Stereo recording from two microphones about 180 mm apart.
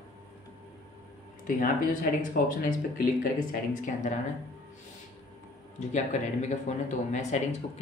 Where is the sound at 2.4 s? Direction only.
55° left (ahead or behind).